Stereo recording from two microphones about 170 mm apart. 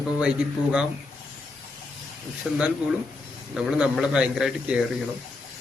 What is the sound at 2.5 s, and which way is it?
Speech, centre (ahead or behind).